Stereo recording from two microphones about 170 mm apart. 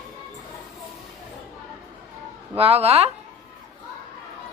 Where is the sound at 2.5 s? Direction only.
35° right (ahead or behind).